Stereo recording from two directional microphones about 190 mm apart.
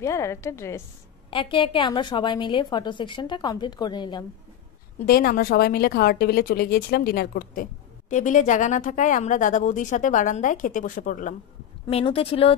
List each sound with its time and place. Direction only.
0.0 s a woman's voice: 15° left (ahead or behind)
1.3 s a woman's voice: 25° left (ahead or behind)
5.0 s a woman's voice: 50° left (ahead or behind)
11.9 s a woman's voice: 30° left (ahead or behind)